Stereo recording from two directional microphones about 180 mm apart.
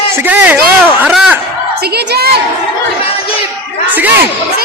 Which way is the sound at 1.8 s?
65° right (ahead or behind).